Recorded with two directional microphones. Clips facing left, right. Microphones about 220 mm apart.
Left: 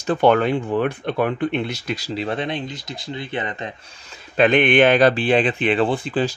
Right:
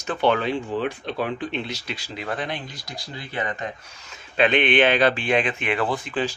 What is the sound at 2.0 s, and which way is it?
Speech, 35° left (ahead or behind).